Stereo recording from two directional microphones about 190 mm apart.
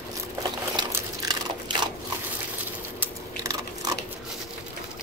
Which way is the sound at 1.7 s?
25° right (ahead or behind).